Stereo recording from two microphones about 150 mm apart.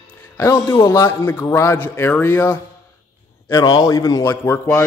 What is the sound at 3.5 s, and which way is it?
Speech, 30° left (ahead or behind).